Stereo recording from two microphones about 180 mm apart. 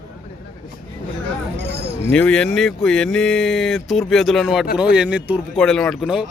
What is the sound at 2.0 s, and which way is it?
Speech, 5° left (ahead or behind).